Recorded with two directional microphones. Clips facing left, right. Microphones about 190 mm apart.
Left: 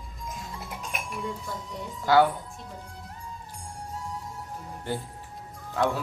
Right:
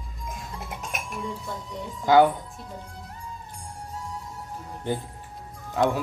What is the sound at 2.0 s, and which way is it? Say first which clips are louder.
Speech: right 3 dB; 20° right (ahead or behind).